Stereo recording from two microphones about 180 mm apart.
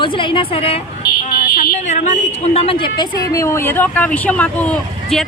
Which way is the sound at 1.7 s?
40° left (ahead or behind).